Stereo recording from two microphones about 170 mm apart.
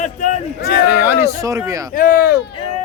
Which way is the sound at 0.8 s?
10° right (ahead or behind).